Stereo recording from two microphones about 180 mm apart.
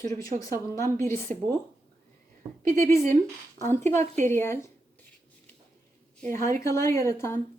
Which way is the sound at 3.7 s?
15° left (ahead or behind).